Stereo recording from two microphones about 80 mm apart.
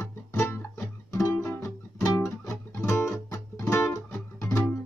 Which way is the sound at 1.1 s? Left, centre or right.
Left.